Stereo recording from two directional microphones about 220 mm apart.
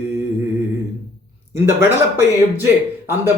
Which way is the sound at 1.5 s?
10° right (ahead or behind).